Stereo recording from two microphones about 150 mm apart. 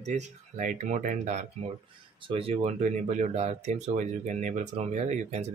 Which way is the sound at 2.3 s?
40° right (ahead or behind).